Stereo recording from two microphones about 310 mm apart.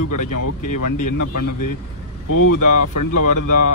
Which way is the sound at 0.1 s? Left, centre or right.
Left.